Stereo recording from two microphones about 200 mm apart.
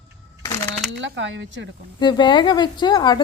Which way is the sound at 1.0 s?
65° right (ahead or behind).